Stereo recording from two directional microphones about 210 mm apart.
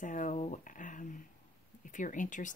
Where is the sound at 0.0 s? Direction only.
35° left (ahead or behind).